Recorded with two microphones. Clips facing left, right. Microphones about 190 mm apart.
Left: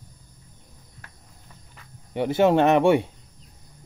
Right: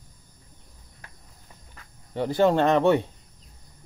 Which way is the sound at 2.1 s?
15° left (ahead or behind).